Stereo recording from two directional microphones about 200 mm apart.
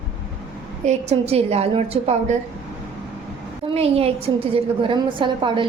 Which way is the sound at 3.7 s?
30° right (ahead or behind).